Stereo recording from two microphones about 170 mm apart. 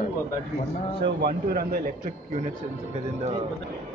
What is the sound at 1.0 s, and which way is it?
Speech, 75° right (ahead or behind).